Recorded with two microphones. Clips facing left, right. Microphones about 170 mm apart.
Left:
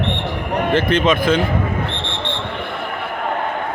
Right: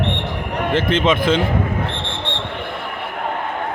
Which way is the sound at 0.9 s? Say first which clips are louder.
Right 1 dB; 25° right (ahead or behind).